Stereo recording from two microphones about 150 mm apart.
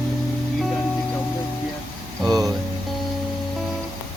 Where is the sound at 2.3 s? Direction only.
25° right (ahead or behind).